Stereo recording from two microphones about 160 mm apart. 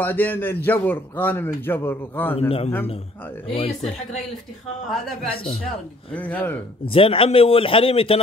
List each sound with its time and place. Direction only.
0.0 s a man's voice: 10° left (ahead or behind)
2.3 s a man's voice: 40° left (ahead or behind)
5.3 s a man's voice: 35° left (ahead or behind)
6.1 s a man's voice: 10° left (ahead or behind)
6.9 s a man's voice: 35° left (ahead or behind)